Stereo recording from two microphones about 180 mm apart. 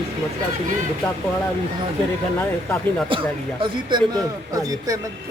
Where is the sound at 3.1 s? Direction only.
30° right (ahead or behind).